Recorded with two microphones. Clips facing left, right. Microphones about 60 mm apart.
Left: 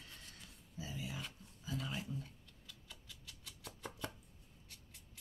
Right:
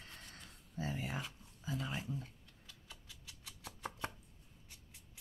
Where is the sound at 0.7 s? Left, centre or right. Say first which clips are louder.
Right 5 dB; right.